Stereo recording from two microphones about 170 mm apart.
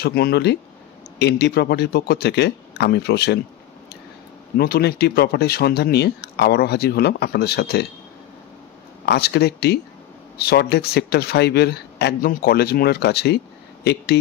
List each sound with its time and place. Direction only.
0.0 s speech: 65° left (ahead or behind)
4.6 s speech: 65° left (ahead or behind)
9.0 s speech: 75° left (ahead or behind)